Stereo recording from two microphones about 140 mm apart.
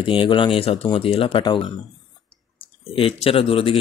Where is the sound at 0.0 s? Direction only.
35° left (ahead or behind).